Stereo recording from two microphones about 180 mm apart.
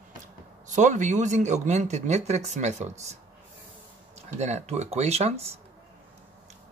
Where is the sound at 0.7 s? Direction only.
40° right (ahead or behind).